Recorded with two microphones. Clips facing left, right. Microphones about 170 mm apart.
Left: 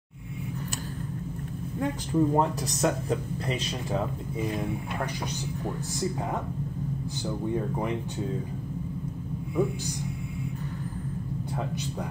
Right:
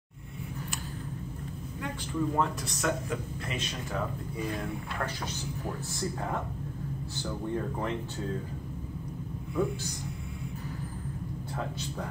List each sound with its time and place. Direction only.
1.8 s speech: 35° left (ahead or behind)
4.4 s speech: 20° left (ahead or behind)
7.5 s speech: 15° left (ahead or behind)
9.6 s speech: 15° left (ahead or behind)